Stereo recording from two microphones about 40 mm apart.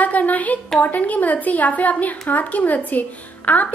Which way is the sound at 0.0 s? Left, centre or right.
Left.